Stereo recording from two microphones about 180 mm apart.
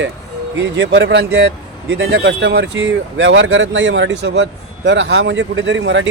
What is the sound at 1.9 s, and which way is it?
Speech, 90° right.